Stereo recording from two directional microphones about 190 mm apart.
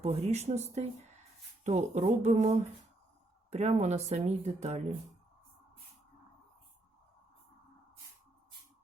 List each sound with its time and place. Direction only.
0.0 s speech: 35° right (ahead or behind)